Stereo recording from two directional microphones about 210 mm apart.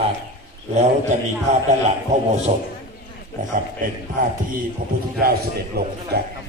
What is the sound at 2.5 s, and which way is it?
Speech, 35° right (ahead or behind).